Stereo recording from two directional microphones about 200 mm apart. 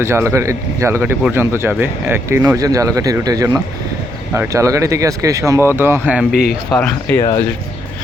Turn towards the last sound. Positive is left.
turn(degrees=25)  # may be behind; listen again after turning